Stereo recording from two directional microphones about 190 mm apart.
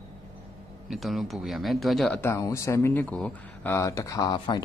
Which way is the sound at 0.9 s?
Centre (ahead or behind).